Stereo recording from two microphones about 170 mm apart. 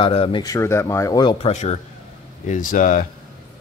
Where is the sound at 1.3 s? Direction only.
40° left (ahead or behind).